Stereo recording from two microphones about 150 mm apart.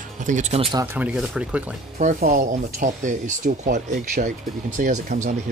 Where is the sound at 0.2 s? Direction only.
55° right (ahead or behind).